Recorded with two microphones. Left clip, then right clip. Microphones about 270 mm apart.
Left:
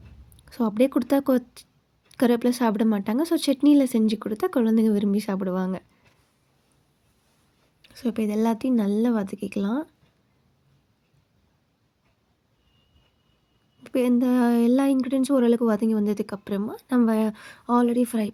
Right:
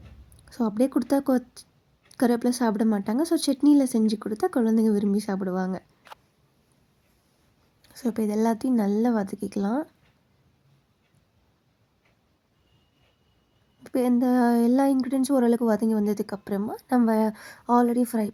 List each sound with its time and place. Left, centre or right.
0.7 s speech: centre
4.0 s speech: left
4.4 s speech: centre
7.8 s speech: centre
13.8 s speech: centre